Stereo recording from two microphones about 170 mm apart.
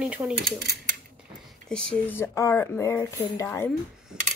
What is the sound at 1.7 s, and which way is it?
Speech, 5° left (ahead or behind).